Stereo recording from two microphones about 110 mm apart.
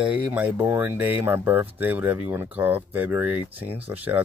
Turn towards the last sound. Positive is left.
turn(degrees=-15)  # may be behind; listen again after turning